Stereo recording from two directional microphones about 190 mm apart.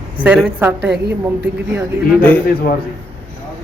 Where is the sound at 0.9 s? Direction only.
60° right (ahead or behind).